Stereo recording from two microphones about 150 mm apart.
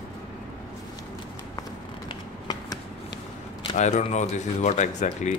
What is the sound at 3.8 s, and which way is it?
Speech, 55° left (ahead or behind).